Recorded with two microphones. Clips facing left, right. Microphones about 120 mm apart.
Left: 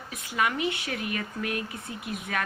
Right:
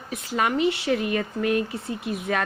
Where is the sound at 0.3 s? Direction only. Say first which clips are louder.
Right 5 dB; 30° right (ahead or behind).